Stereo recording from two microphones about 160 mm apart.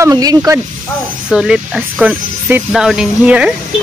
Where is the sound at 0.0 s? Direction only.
25° right (ahead or behind).